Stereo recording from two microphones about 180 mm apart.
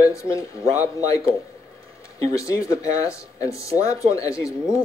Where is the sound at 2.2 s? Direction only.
15° left (ahead or behind).